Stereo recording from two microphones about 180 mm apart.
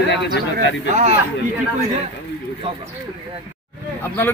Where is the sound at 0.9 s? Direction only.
40° right (ahead or behind).